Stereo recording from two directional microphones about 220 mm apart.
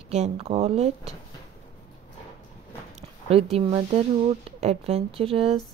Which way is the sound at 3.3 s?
25° right (ahead or behind).